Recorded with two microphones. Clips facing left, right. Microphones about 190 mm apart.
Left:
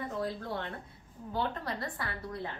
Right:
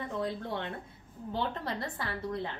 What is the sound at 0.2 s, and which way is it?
A woman's voice, 25° right (ahead or behind).